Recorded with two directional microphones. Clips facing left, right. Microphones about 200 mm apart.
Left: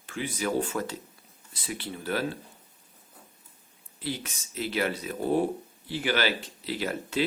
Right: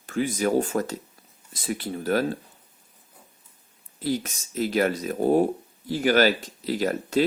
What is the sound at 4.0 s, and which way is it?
Speech, 40° right (ahead or behind).